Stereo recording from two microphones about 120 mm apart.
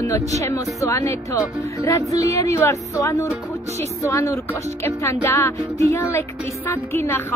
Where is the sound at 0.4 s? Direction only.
25° left (ahead or behind).